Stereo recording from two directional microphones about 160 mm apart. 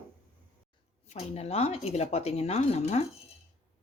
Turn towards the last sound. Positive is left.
turn(degrees=45)  # may be behind; listen again after turning